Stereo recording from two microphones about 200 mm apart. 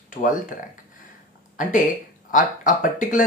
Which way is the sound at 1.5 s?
40° left (ahead or behind).